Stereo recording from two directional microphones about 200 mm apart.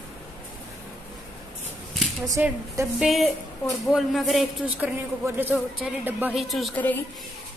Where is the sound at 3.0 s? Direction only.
Centre (ahead or behind).